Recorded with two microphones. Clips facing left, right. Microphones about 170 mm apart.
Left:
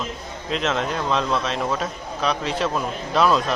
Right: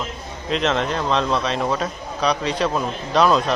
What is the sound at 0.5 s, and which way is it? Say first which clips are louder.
Speech: right 3 dB; 5° left (ahead or behind).